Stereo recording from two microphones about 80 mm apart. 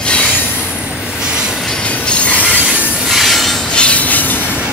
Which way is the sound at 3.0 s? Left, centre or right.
Centre.